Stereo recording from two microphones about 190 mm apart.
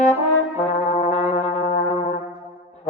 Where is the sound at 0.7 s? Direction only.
35° left (ahead or behind).